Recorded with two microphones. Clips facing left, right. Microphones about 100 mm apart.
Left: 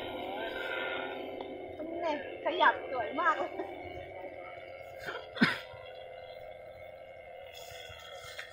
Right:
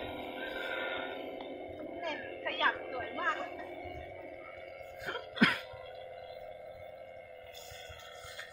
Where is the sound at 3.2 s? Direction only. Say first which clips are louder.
Left 6 dB; 30° left (ahead or behind).